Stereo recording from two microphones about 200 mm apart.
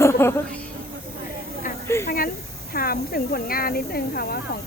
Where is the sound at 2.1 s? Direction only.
45° left (ahead or behind).